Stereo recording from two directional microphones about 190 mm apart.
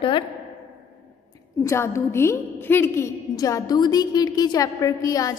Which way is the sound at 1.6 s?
15° left (ahead or behind).